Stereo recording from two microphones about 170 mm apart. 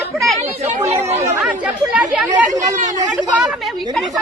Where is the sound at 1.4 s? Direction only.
5° right (ahead or behind).